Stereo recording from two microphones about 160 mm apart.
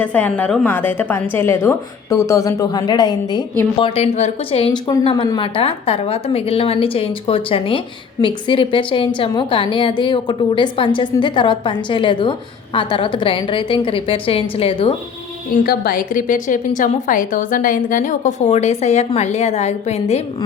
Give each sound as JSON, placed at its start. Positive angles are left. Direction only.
{"t": 0.0, "sound": "a woman's voice", "side_deg": 10}
{"t": 3.8, "sound": "a woman's voice", "side_deg": 35}
{"t": 15.6, "sound": "a woman's voice", "side_deg": 70}